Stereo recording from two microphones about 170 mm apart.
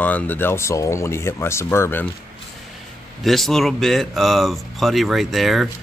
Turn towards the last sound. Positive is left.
turn(degrees=0)  # may be behind; listen again after turning